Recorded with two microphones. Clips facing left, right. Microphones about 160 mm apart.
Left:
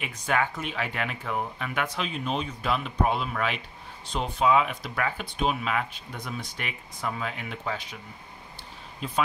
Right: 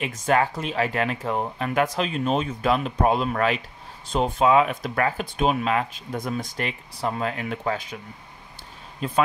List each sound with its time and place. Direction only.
0.0 s speech: 40° right (ahead or behind)